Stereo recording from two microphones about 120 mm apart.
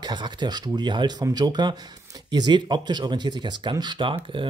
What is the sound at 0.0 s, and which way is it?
Speech, 40° right (ahead or behind).